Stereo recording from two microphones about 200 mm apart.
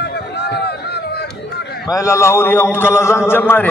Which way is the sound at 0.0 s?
55° left (ahead or behind).